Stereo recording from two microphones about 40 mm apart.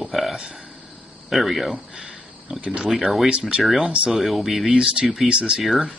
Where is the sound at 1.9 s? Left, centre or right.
Right.